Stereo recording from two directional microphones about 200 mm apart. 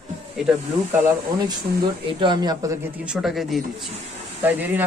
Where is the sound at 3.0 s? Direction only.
5° right (ahead or behind).